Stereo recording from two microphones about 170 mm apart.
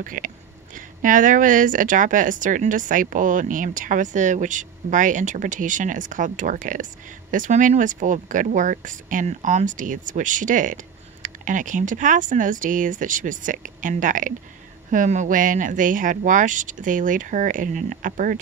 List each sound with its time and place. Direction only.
0.0 s a woman's voice: 50° right (ahead or behind)